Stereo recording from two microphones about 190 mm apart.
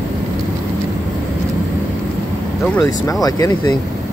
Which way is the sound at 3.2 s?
20° left (ahead or behind).